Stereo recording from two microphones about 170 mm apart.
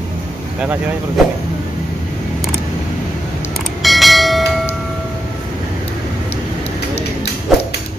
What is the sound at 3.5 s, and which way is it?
Bell, centre (ahead or behind).